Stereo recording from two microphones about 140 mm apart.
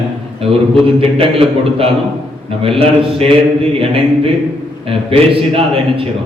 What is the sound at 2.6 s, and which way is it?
A man's voice, 45° right (ahead or behind).